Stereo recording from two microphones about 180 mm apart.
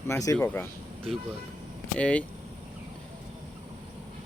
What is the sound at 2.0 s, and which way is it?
Speech, 5° left (ahead or behind).